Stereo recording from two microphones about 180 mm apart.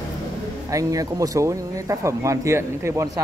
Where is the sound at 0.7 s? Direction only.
20° right (ahead or behind).